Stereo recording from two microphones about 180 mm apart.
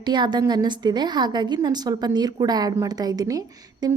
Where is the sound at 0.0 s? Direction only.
25° right (ahead or behind).